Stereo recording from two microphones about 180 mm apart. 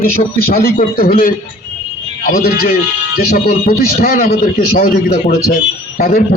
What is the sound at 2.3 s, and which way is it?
A man's voice, 55° left (ahead or behind).